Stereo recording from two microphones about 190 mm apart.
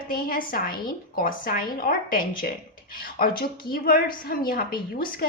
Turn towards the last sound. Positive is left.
turn(degrees=50)  # may be behind; listen again after turning